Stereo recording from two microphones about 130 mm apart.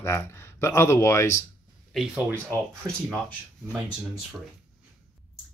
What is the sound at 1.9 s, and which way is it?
Speech, 5° right (ahead or behind).